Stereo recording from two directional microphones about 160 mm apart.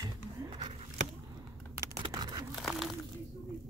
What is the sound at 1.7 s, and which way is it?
Computer keyboard, 20° right (ahead or behind).